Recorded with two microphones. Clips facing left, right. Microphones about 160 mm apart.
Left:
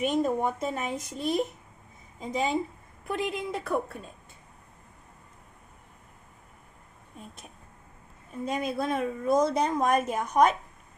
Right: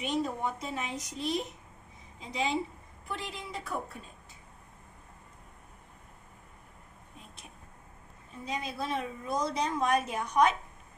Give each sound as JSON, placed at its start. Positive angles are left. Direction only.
{"t": 0.0, "sound": "a woman's voice", "side_deg": 50}
{"t": 8.5, "sound": "a woman's voice", "side_deg": 50}